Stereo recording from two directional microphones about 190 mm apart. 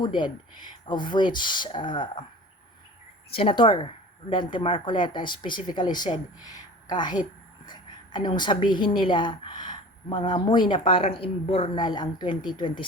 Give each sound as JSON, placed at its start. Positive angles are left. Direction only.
{"t": 0.9, "sound": "a woman's voice", "side_deg": 25}
{"t": 3.3, "sound": "a woman's voice", "side_deg": 25}